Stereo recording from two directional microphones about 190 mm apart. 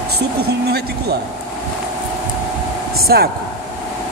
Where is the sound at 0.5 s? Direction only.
60° right (ahead or behind).